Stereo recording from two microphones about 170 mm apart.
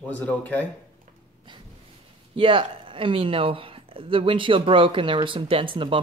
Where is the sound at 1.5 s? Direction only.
30° right (ahead or behind).